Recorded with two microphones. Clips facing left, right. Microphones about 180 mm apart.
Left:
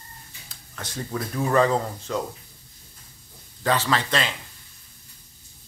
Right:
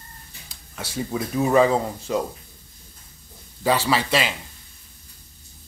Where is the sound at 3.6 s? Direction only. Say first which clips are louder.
Right 2 dB; 10° right (ahead or behind).